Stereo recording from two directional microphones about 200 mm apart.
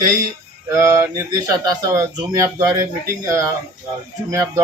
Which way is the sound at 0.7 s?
15° right (ahead or behind).